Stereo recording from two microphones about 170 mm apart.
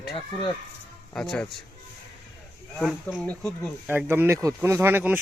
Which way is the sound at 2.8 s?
Centre (ahead or behind).